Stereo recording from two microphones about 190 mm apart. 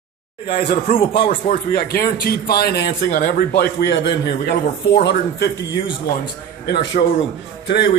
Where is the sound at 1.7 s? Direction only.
50° left (ahead or behind).